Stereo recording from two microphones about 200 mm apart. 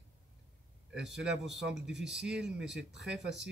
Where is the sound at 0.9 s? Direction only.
Centre (ahead or behind).